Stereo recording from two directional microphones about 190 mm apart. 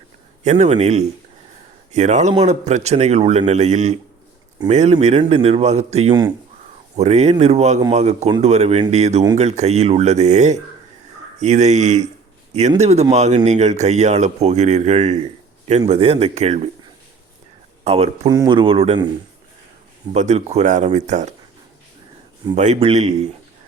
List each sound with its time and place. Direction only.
0.4 s speech: 35° right (ahead or behind)
17.8 s speech: 35° right (ahead or behind)
18.3 s speech: 20° right (ahead or behind)
20.1 s speech: 35° right (ahead or behind)
22.5 s speech: 35° right (ahead or behind)